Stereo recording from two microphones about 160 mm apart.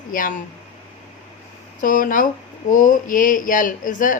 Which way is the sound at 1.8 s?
60° left (ahead or behind).